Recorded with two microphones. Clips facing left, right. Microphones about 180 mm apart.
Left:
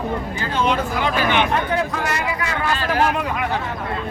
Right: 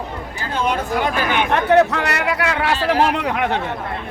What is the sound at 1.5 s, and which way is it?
Speech, 70° right (ahead or behind).